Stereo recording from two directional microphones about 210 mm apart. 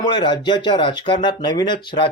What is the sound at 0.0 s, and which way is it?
Speech, 20° left (ahead or behind).